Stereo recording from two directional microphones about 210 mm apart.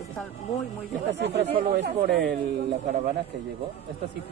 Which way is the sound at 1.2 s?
55° right (ahead or behind).